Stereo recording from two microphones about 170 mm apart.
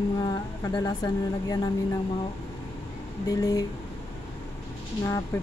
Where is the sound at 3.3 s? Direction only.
20° left (ahead or behind).